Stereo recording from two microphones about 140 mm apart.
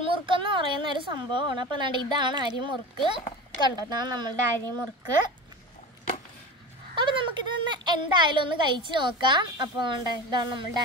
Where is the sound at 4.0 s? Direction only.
30° right (ahead or behind).